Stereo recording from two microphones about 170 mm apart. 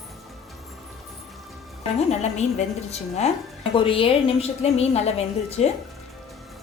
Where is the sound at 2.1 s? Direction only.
40° left (ahead or behind).